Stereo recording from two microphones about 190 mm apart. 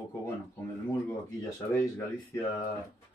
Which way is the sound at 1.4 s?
10° left (ahead or behind).